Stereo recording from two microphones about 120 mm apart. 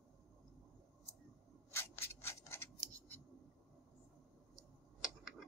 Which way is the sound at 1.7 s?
20° left (ahead or behind).